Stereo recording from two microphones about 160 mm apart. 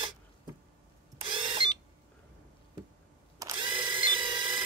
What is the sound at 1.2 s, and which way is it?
Printer, 30° right (ahead or behind).